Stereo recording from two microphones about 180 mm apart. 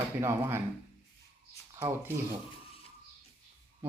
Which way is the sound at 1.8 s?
15° right (ahead or behind).